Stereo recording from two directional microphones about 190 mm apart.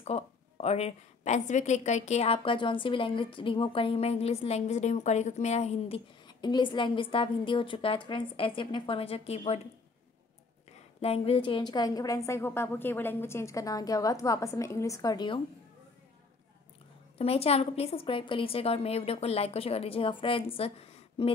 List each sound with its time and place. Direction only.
0.0 s a woman's voice: 35° left (ahead or behind)
11.0 s a woman's voice: 30° left (ahead or behind)
17.2 s a woman's voice: 30° left (ahead or behind)